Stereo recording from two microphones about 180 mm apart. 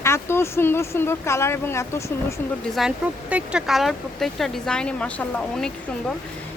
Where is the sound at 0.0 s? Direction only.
15° left (ahead or behind).